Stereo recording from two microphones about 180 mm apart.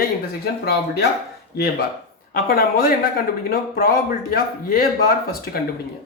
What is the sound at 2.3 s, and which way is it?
Speech, 55° left (ahead or behind).